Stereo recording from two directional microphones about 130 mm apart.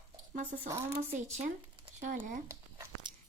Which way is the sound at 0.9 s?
90° right.